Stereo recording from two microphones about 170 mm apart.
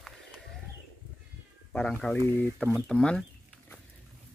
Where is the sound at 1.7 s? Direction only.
5° left (ahead or behind).